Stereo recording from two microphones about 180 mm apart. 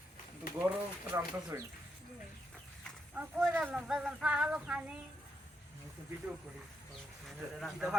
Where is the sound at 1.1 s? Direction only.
15° right (ahead or behind).